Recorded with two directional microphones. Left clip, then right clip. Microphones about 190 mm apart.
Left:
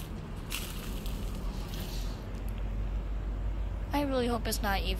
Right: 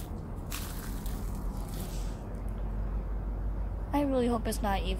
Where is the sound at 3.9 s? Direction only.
20° right (ahead or behind).